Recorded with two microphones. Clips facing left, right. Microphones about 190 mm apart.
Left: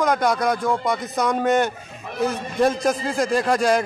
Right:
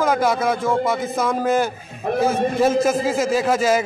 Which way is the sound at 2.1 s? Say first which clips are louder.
Right 11 dB; 55° right (ahead or behind).